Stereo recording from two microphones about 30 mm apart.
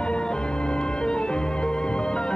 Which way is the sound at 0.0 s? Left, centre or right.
Left.